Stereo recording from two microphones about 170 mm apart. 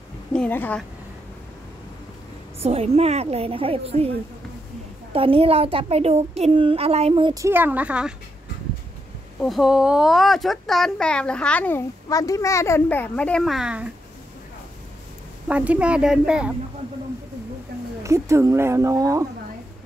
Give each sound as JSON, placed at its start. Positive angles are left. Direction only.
{"t": 0.3, "sound": "a woman's voice", "side_deg": 10}
{"t": 2.6, "sound": "a child's voice", "side_deg": -35}
{"t": 5.1, "sound": "a child's voice", "side_deg": -30}
{"t": 7.3, "sound": "speech", "side_deg": -15}
{"t": 9.4, "sound": "speech", "side_deg": 0}
{"t": 12.1, "sound": "a woman's voice", "side_deg": 20}
{"t": 15.4, "sound": "speech", "side_deg": -10}
{"t": 18.0, "sound": "speech", "side_deg": -15}